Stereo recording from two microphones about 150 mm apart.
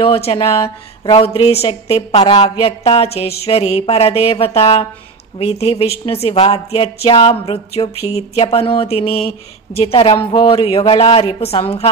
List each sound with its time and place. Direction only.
0.0 s a woman's voice: 40° left (ahead or behind)